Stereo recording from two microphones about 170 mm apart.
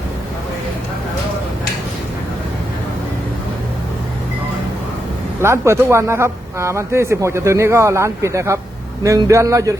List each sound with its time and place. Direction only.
5.4 s speech: 15° right (ahead or behind)